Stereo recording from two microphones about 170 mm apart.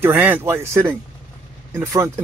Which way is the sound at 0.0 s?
10° right (ahead or behind).